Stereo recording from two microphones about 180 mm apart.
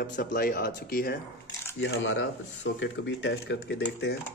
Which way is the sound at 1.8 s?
75° left (ahead or behind).